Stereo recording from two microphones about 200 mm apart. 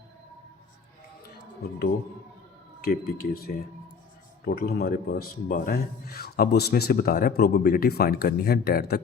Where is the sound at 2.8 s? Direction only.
50° left (ahead or behind).